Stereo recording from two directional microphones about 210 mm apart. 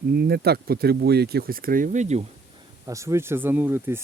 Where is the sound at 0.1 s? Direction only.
50° right (ahead or behind); by 2.2 s 35° right (ahead or behind).